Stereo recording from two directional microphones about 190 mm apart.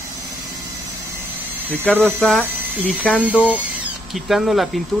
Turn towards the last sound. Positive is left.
turn(degrees=0)  # may be behind; listen again after turning